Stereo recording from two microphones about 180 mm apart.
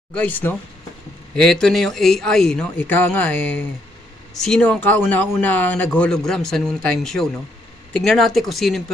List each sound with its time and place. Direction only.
0.1 s speech: 10° left (ahead or behind)